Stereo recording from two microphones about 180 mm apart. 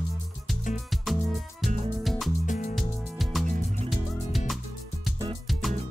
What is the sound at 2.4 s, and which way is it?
Music, 45° left (ahead or behind).